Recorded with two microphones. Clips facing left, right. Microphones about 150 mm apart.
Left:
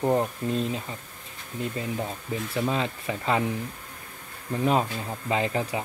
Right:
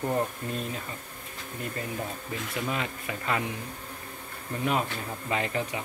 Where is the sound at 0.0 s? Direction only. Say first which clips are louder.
Left 5 dB; 30° left (ahead or behind).